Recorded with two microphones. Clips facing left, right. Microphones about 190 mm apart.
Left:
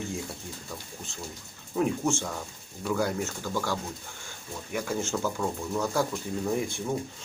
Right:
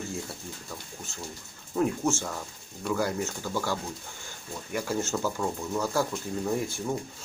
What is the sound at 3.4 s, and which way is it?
Speech, 10° right (ahead or behind).